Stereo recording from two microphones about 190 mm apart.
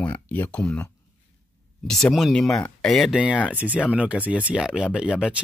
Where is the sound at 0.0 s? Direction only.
10° left (ahead or behind).